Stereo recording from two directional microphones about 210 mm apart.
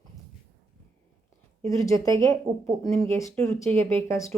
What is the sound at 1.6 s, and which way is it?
Speech, 15° left (ahead or behind).